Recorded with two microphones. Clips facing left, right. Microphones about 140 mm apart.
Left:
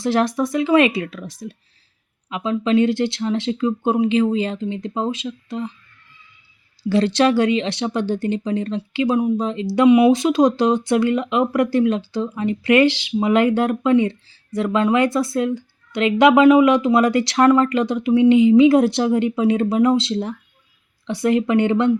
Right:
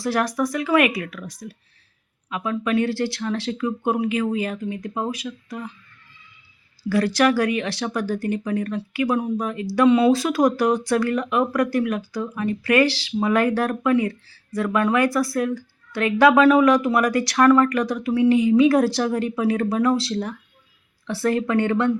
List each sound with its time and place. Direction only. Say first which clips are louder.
0.0 s speech: left 3 dB; 25° left (ahead or behind)
6.8 s speech: left 2 dB; 25° left (ahead or behind)